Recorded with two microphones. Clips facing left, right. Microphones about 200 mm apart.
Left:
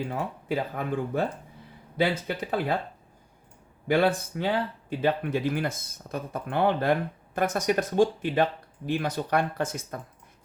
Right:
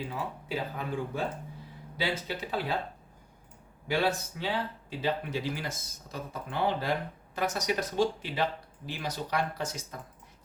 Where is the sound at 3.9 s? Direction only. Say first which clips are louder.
Left 6 dB; 55° left (ahead or behind).